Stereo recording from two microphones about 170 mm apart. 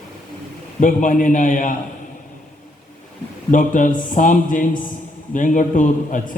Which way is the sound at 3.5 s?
50° left (ahead or behind).